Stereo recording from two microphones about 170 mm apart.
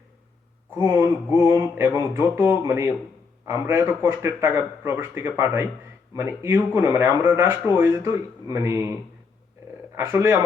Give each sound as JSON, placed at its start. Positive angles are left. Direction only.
{"t": 0.8, "sound": "speech", "side_deg": -15}
{"t": 9.9, "sound": "speech", "side_deg": -15}